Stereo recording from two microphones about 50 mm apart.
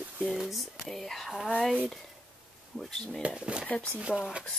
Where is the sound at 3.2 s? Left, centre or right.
Right.